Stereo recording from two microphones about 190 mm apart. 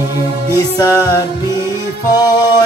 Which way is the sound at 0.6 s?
20° left (ahead or behind).